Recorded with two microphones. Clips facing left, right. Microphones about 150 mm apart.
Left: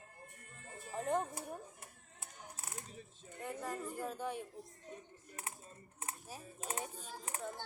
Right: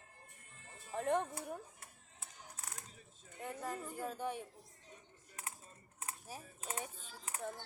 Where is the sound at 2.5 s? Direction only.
25° left (ahead or behind).